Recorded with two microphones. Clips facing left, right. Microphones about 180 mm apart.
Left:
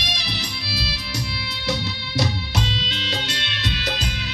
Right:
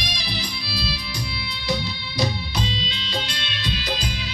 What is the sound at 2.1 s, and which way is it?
Music, 80° left.